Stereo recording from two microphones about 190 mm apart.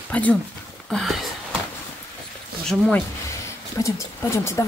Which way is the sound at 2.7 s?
5° left (ahead or behind).